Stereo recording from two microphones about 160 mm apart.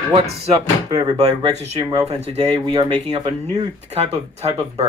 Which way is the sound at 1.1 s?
40° right (ahead or behind).